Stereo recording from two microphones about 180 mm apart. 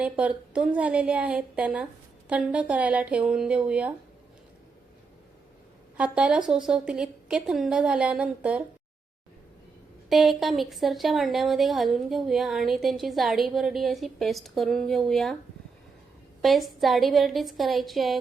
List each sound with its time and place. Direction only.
0.0 s a woman's voice: 5° right (ahead or behind)
6.0 s a woman's voice: 5° right (ahead or behind)
10.1 s a woman's voice: centre (ahead or behind)
16.4 s a woman's voice: centre (ahead or behind)